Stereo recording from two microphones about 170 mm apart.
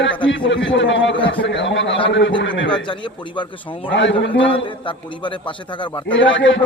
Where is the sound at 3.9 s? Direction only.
90° left.